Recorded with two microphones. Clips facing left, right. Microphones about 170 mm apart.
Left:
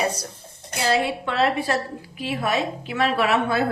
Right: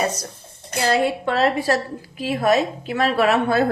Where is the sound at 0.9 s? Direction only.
40° right (ahead or behind).